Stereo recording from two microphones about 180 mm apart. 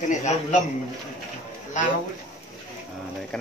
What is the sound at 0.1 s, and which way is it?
Speech, 40° left (ahead or behind).